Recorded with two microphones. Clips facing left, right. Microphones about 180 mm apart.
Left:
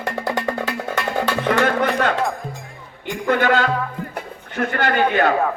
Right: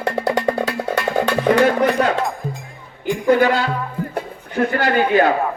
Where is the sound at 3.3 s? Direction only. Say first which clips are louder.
Right 2 dB; 35° right (ahead or behind).